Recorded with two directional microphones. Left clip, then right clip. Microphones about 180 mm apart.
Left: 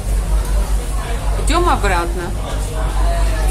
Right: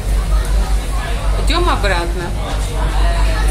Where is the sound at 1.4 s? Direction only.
10° left (ahead or behind).